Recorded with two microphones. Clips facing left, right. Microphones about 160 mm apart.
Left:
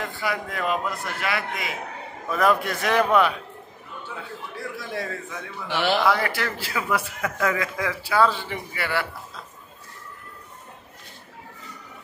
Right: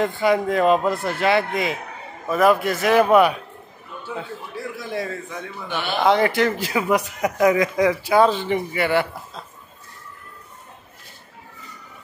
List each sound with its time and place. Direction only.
0.2 s speech: 25° right (ahead or behind)
2.2 s a man's voice: 5° right (ahead or behind)
4.9 s a man's voice: 5° right (ahead or behind)
5.7 s speech: 90° left
5.9 s speech: 25° right (ahead or behind)